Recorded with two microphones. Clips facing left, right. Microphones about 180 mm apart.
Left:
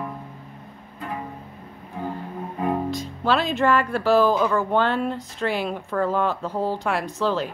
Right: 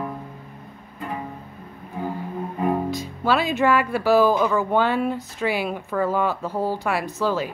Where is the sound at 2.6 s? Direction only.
5° right (ahead or behind).